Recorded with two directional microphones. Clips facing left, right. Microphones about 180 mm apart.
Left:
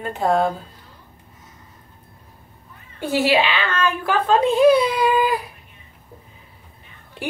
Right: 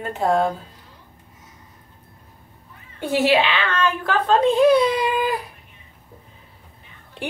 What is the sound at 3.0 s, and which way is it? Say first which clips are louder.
Speech: even; 5° left (ahead or behind).